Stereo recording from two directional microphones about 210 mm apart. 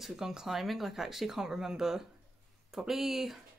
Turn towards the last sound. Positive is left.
turn(degrees=0)  # may be behind; listen again after turning